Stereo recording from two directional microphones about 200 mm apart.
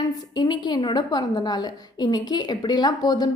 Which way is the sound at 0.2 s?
20° left (ahead or behind).